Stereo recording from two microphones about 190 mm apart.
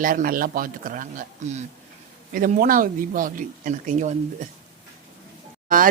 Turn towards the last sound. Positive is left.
turn(degrees=-45)  # may be behind; listen again after turning